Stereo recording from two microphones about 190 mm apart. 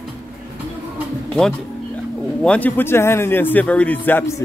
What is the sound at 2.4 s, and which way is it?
Speech, 5° left (ahead or behind).